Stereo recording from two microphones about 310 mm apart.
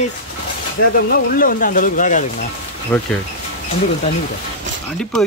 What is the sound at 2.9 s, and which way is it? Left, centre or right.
Speech, centre.